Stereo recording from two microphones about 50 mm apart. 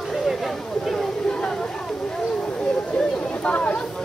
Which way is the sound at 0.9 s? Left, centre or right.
Centre.